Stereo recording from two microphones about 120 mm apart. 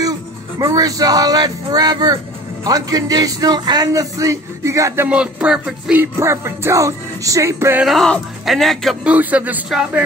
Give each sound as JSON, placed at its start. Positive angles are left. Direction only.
{"t": 0.6, "sound": "a man's voice", "side_deg": -30}
{"t": 5.0, "sound": "speech", "side_deg": -10}
{"t": 5.9, "sound": "music", "side_deg": -20}
{"t": 7.8, "sound": "speech", "side_deg": 0}
{"t": 9.1, "sound": "speech", "side_deg": -15}